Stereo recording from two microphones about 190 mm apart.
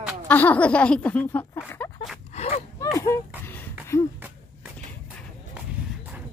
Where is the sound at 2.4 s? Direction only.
35° left (ahead or behind).